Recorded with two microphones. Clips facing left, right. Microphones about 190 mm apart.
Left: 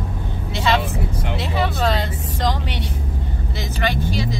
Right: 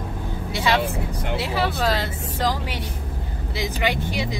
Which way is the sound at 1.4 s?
5° right (ahead or behind).